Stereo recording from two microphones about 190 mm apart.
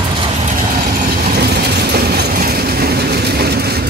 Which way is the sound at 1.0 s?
55° right (ahead or behind).